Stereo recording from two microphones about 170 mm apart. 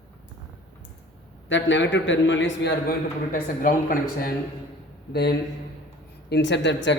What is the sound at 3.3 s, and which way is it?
Speech, 55° left (ahead or behind).